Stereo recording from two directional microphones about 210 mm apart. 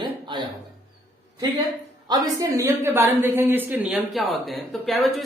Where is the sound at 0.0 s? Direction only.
20° right (ahead or behind).